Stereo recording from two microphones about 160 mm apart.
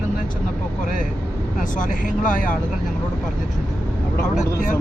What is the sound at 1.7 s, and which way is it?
Speech, 55° left (ahead or behind).